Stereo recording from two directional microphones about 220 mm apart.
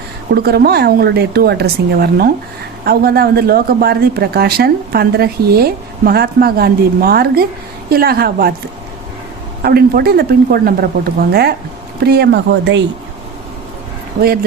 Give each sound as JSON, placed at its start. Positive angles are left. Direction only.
{"t": 0.3, "sound": "speech", "side_deg": -45}
{"t": 9.6, "sound": "speech", "side_deg": -45}